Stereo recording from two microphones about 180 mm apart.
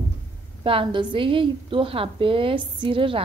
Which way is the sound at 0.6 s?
30° right (ahead or behind).